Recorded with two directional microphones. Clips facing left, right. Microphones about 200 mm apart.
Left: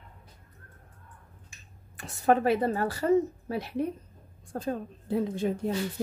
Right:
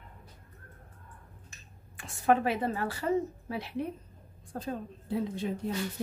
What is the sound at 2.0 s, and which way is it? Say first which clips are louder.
A woman's voice: left 2 dB; 40° left (ahead or behind).